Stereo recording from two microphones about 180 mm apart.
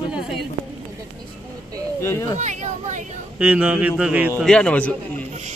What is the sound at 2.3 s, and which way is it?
Speech, 40° right (ahead or behind).